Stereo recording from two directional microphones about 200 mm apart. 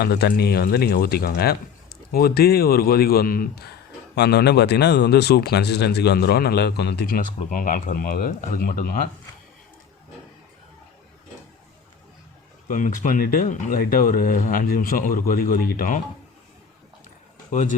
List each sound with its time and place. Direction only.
0.0 s speech: 55° left (ahead or behind)
12.6 s speech: 40° left (ahead or behind)
17.5 s speech: 40° left (ahead or behind)